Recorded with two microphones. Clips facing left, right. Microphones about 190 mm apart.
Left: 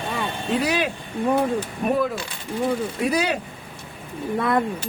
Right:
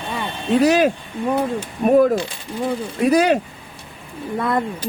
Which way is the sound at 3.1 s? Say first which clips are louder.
Right 10 dB; 45° right (ahead or behind).